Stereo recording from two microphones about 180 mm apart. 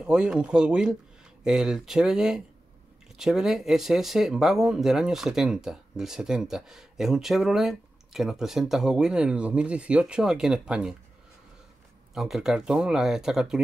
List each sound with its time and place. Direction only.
0.0 s speech: 5° right (ahead or behind)
12.1 s speech: centre (ahead or behind)